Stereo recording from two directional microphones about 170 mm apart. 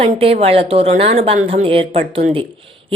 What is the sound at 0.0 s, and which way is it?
Speech, 35° right (ahead or behind).